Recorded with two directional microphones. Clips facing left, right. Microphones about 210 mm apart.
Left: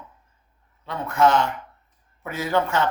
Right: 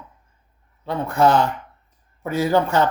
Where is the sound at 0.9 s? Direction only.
35° right (ahead or behind).